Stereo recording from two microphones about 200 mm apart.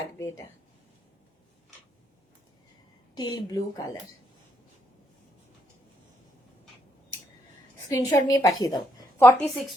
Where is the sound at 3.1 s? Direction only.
20° left (ahead or behind).